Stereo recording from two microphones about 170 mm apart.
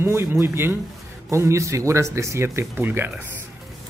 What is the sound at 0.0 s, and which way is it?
Speech, 15° right (ahead or behind).